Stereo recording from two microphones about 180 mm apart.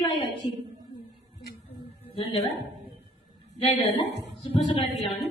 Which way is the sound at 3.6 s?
30° left (ahead or behind).